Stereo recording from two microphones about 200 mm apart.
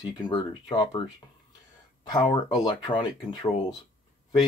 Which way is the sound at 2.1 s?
20° left (ahead or behind).